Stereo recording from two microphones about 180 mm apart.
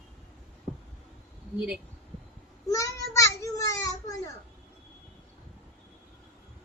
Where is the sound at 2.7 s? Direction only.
15° left (ahead or behind).